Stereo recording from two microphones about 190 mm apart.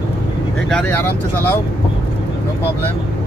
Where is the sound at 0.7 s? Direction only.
5° left (ahead or behind).